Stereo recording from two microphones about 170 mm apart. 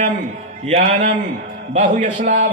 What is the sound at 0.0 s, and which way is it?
A man's voice, 40° right (ahead or behind).